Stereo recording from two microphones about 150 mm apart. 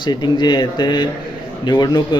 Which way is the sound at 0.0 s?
30° left (ahead or behind).